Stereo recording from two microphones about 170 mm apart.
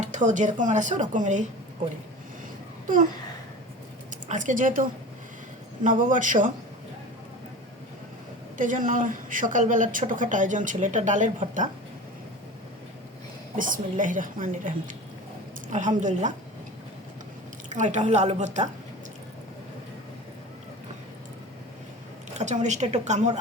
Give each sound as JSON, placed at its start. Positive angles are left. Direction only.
{"t": 0.0, "sound": "a woman's voice", "side_deg": -45}
{"t": 2.8, "sound": "a sound", "side_deg": -50}
{"t": 4.3, "sound": "a woman's voice", "side_deg": -50}
{"t": 8.5, "sound": "a woman's voice", "side_deg": -50}
{"t": 13.6, "sound": "a woman's voice", "side_deg": -50}
{"t": 16.0, "sound": "a woman's voice", "side_deg": -45}
{"t": 17.7, "sound": "a woman's voice", "side_deg": -45}
{"t": 22.4, "sound": "a woman's voice", "side_deg": -45}